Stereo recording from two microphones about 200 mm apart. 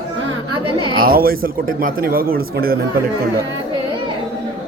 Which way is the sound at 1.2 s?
45° right (ahead or behind).